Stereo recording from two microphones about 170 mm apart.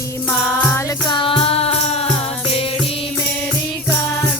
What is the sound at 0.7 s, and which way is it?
Music, 20° left (ahead or behind).